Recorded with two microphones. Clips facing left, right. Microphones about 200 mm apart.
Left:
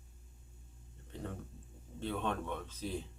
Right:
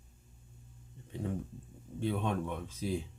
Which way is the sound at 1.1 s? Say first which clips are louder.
Right 5 dB; 10° right (ahead or behind).